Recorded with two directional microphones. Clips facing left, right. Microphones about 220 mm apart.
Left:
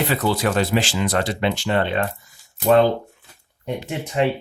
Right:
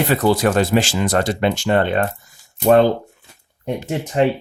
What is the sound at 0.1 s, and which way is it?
Speech, 45° right (ahead or behind).